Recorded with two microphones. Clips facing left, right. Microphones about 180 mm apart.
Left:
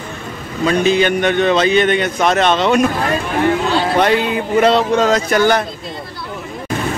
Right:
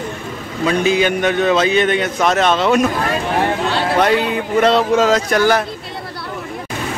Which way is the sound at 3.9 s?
Centre (ahead or behind).